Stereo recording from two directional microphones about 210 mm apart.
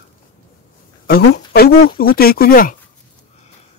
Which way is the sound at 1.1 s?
50° left (ahead or behind).